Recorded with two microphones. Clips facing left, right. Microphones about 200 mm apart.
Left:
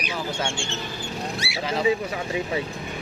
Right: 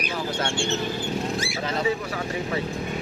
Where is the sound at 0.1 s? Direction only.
10° left (ahead or behind).